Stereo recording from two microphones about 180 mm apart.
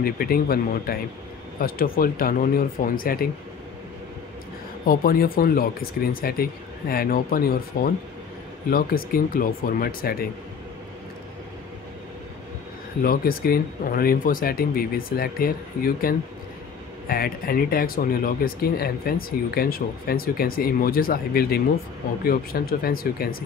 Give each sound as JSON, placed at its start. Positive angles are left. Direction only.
{"t": 0.0, "sound": "speech", "side_deg": 55}
{"t": 4.8, "sound": "speech", "side_deg": 55}
{"t": 13.0, "sound": "speech", "side_deg": 55}